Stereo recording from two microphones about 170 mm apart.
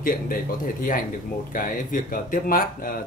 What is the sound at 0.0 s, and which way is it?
Speech, 55° left (ahead or behind).